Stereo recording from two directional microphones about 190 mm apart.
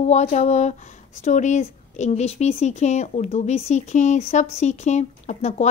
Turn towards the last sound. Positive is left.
turn(degrees=35)  # may be behind; listen again after turning